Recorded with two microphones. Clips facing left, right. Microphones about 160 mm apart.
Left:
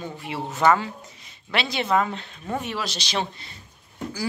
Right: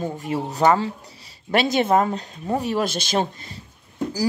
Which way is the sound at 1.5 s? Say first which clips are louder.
Right 5 dB; 45° right (ahead or behind).